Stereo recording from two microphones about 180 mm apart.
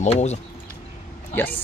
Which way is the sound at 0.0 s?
40° left (ahead or behind).